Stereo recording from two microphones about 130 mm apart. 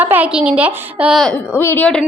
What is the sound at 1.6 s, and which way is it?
Speech, 15° left (ahead or behind).